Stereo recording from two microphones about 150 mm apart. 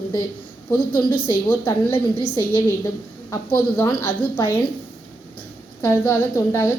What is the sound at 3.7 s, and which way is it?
Speech, 15° left (ahead or behind).